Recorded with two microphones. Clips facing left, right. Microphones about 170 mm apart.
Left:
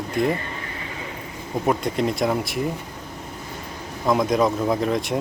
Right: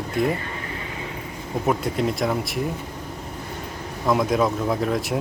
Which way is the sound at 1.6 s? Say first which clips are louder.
Left 1 dB; centre (ahead or behind).